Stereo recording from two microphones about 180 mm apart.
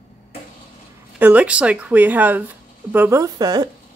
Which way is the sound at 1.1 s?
10° right (ahead or behind).